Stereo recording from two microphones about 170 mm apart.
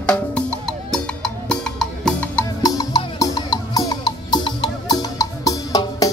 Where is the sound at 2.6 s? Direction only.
20° left (ahead or behind).